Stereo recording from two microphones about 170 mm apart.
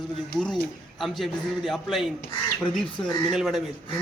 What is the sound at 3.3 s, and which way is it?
Speech, centre (ahead or behind).